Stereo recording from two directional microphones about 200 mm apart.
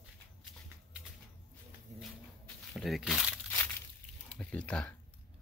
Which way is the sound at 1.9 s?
35° right (ahead or behind).